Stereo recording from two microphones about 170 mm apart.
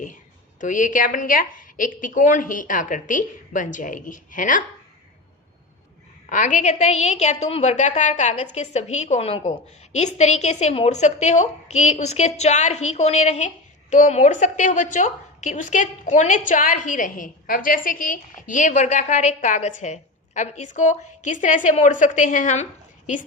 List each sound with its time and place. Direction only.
0.6 s a woman's voice: 50° left (ahead or behind)
6.2 s a woman's voice: 45° left (ahead or behind)